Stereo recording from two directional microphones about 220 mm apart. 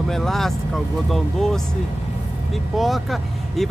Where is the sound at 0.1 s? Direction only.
Centre (ahead or behind).